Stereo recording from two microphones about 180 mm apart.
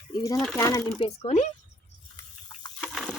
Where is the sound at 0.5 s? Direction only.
20° left (ahead or behind).